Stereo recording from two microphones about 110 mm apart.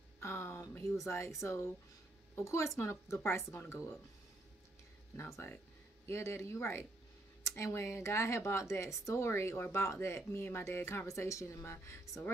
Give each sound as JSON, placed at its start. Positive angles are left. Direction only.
{"t": 0.2, "sound": "a sound", "side_deg": 20}
{"t": 1.0, "sound": "speech", "side_deg": 25}
{"t": 5.1, "sound": "speech", "side_deg": 25}